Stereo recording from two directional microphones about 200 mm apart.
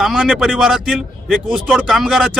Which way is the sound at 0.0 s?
Centre (ahead or behind).